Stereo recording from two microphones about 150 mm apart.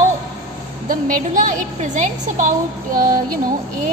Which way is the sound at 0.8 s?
65° right (ahead or behind).